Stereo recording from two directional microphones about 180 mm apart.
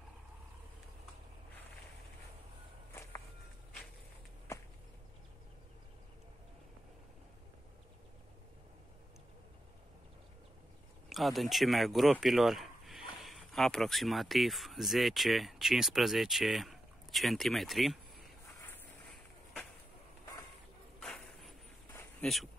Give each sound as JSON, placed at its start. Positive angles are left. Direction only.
{"t": 11.1, "sound": "speech", "side_deg": 0}
{"t": 21.0, "sound": "a sound", "side_deg": 0}
{"t": 22.2, "sound": "speech", "side_deg": 0}